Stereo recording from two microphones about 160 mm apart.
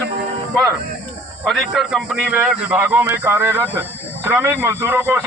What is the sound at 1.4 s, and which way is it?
A man's voice, centre (ahead or behind).